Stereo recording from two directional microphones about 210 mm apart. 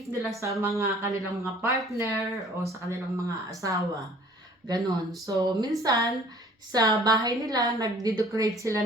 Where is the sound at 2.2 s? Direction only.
Centre (ahead or behind).